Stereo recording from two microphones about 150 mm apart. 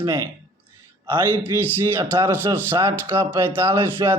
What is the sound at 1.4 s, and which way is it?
A man's voice, 15° right (ahead or behind).